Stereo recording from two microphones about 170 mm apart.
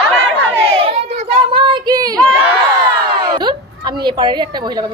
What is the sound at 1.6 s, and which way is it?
Speech, 25° right (ahead or behind).